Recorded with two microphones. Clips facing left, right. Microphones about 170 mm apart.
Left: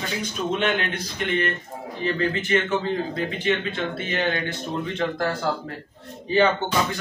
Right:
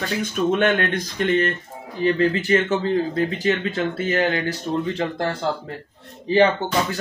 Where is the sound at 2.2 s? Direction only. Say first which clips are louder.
Right 2 dB; 35° right (ahead or behind).